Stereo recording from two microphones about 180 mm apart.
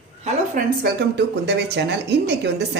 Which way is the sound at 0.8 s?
65° right (ahead or behind).